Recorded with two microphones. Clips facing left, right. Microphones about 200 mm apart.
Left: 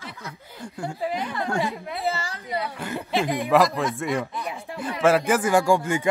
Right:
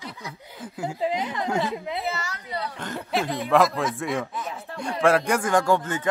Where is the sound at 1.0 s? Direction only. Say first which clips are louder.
Right 1 dB; 20° right (ahead or behind).